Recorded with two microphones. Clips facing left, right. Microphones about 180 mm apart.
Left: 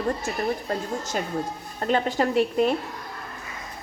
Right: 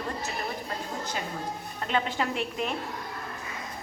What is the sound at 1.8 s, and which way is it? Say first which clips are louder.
Speech: left 6 dB; 40° left (ahead or behind).